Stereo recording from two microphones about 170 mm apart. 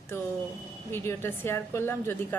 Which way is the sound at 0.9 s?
15° left (ahead or behind).